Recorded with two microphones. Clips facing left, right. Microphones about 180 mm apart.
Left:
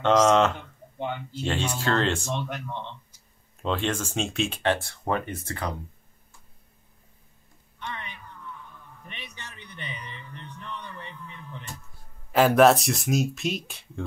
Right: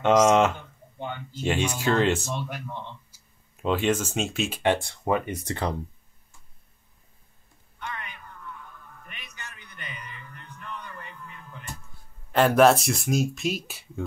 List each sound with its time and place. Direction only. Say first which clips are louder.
0.0 s speech: right 1 dB; 10° right (ahead or behind)
1.4 s speech: right 3 dB; 10° right (ahead or behind)
12.3 s speech: even; centre (ahead or behind)